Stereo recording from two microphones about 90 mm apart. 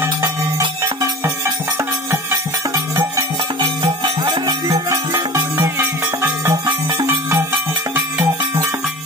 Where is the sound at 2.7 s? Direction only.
45° right (ahead or behind).